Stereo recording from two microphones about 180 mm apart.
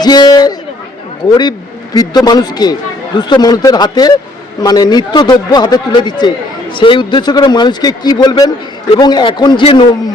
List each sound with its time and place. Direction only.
0.0 s a man's voice: 25° left (ahead or behind)